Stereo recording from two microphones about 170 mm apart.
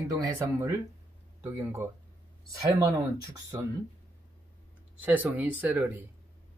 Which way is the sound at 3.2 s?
20° right (ahead or behind).